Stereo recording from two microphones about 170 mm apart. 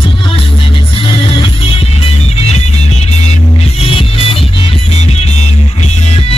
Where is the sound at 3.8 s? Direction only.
35° left (ahead or behind).